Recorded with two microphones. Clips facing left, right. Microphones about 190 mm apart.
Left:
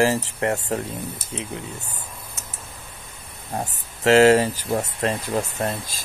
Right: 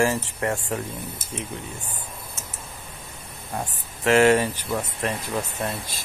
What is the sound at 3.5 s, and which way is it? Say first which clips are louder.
Speech: left 2 dB; 30° left (ahead or behind).